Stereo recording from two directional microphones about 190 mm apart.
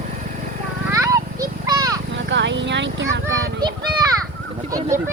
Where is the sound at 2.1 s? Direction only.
70° right (ahead or behind).